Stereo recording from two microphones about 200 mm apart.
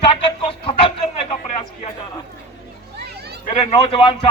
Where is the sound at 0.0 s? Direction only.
25° left (ahead or behind).